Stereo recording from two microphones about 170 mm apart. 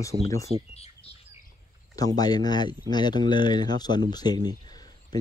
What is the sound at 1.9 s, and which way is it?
Speech, 20° left (ahead or behind).